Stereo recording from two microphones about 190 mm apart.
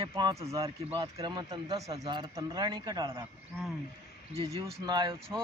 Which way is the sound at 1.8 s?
35° right (ahead or behind).